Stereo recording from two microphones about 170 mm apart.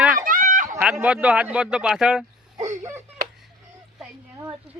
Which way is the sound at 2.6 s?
15° right (ahead or behind).